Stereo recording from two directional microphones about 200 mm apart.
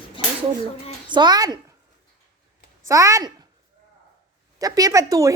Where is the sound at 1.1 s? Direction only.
20° right (ahead or behind).